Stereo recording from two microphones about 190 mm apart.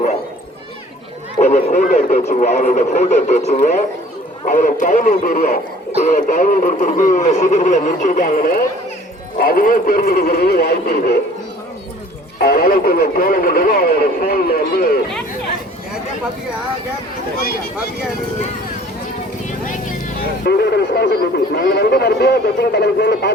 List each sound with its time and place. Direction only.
1.4 s speech: 45° left (ahead or behind)
12.4 s speech: 50° left (ahead or behind)
20.4 s speech: 60° left (ahead or behind)